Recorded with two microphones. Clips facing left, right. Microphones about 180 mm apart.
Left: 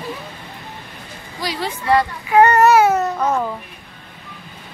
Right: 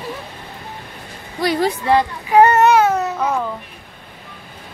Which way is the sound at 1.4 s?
55° right (ahead or behind).